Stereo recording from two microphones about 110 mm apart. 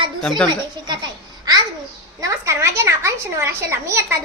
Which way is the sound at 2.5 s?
25° right (ahead or behind).